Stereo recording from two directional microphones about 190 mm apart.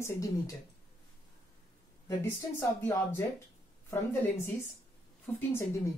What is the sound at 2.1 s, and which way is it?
Speech, 15° left (ahead or behind).